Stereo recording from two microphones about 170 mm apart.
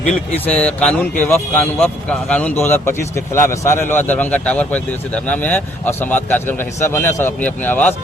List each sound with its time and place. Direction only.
0.0 s speech: 5° left (ahead or behind)